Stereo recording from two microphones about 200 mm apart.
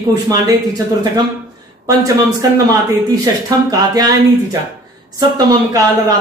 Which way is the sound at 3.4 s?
20° right (ahead or behind).